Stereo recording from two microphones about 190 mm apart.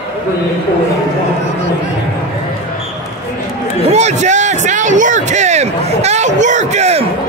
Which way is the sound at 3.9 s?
35° right (ahead or behind).